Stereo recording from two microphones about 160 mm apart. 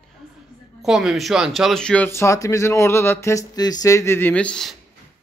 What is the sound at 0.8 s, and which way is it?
Speech, centre (ahead or behind).